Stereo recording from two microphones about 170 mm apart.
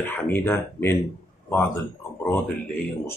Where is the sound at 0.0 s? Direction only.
15° left (ahead or behind).